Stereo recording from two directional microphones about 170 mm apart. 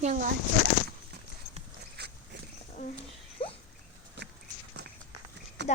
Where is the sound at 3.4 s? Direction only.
30° left (ahead or behind).